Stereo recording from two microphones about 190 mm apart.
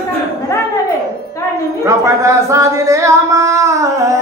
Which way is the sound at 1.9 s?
15° right (ahead or behind).